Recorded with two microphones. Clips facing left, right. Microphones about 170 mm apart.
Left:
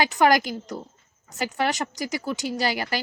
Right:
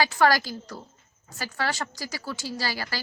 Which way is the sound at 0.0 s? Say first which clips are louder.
Left 2 dB; 20° left (ahead or behind).